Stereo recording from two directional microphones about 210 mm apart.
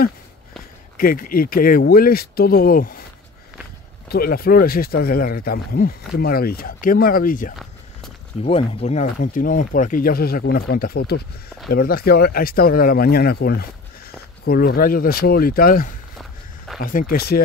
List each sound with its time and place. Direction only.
0.9 s speech: 40° left (ahead or behind)
4.1 s speech: 45° left (ahead or behind)
8.5 s speech: 30° left (ahead or behind)
16.2 s walk: centre (ahead or behind)
16.8 s speech: 40° left (ahead or behind)